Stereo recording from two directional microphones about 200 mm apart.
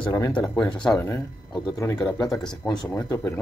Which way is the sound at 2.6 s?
15° left (ahead or behind).